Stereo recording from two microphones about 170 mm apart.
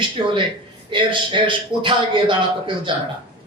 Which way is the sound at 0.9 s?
30° right (ahead or behind).